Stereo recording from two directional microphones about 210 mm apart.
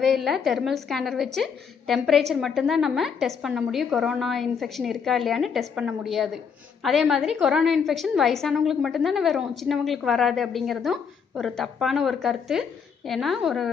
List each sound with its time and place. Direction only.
0.0 s a woman's voice: centre (ahead or behind)